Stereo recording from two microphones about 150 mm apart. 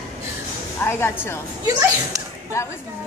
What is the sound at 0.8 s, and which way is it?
Speech, 15° left (ahead or behind).